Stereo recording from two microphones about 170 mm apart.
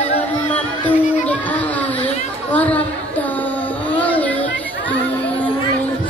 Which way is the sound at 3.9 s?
10° left (ahead or behind).